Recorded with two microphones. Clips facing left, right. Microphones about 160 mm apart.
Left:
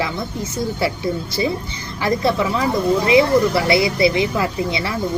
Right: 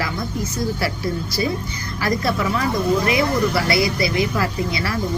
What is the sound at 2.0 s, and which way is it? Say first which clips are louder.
Speech: left 3 dB; 25° left (ahead or behind).